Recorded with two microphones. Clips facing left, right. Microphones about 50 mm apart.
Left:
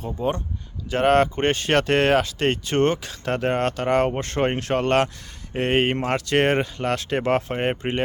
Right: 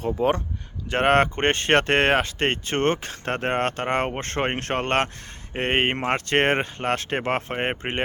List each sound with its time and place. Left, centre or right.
0.2 s speech: right
0.9 s speech: right